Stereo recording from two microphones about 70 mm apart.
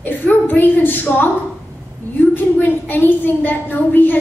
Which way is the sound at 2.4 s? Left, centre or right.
Left.